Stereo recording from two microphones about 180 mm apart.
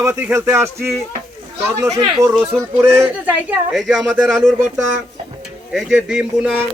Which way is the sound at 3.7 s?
Centre (ahead or behind).